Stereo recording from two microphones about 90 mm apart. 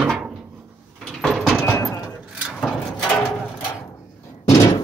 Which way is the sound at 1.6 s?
35° left (ahead or behind).